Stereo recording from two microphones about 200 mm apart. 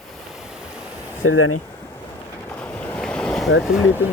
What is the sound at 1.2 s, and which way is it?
Speech, 90° left.